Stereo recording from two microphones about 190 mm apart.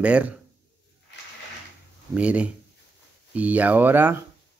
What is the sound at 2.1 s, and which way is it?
Speech, 5° right (ahead or behind).